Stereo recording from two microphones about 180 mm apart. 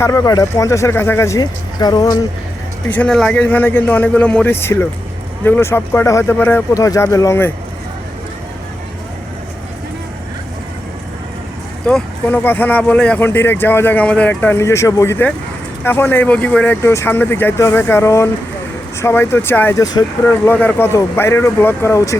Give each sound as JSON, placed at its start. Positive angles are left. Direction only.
{"t": 0.0, "sound": "speech", "side_deg": 15}
{"t": 2.9, "sound": "speech", "side_deg": 5}
{"t": 11.9, "sound": "speech", "side_deg": 5}